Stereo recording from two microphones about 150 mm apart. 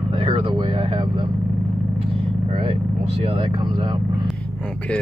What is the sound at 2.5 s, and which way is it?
Vehicle, 35° right (ahead or behind).